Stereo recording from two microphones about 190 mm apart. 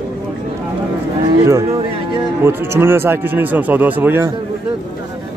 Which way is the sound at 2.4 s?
10° right (ahead or behind).